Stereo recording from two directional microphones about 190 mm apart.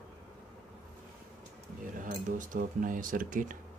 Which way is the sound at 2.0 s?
45° right (ahead or behind).